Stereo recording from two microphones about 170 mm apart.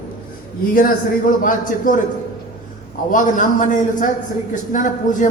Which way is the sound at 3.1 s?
50° left (ahead or behind).